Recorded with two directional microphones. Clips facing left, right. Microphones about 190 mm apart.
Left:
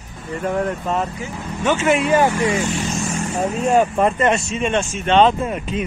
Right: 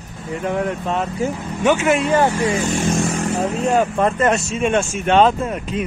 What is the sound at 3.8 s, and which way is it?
Speech, 10° left (ahead or behind).